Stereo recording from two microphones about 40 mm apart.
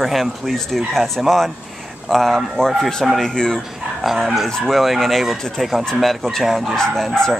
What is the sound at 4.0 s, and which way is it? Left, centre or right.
Speech, centre.